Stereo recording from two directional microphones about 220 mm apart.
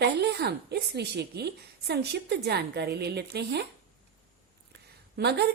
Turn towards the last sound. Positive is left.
turn(degrees=-45)  # may be behind; listen again after turning